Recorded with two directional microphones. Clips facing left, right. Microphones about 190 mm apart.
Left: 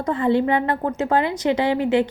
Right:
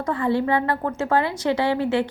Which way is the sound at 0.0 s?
20° left (ahead or behind).